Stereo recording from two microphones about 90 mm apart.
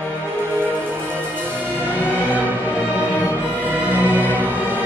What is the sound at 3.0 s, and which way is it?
Music, 20° right (ahead or behind).